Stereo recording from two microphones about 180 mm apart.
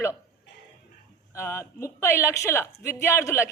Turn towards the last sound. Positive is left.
turn(degrees=15)  # may be behind; listen again after turning